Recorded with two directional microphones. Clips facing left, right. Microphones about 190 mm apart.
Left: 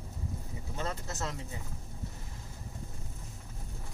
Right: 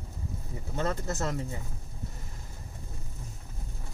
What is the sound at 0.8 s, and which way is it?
Speech, 50° right (ahead or behind).